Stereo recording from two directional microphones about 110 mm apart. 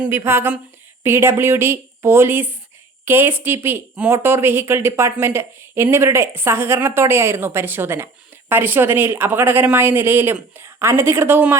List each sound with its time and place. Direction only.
0.0 s speech: 20° right (ahead or behind)